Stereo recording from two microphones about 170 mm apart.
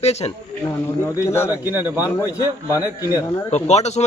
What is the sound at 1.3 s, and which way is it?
A man's voice, 15° left (ahead or behind).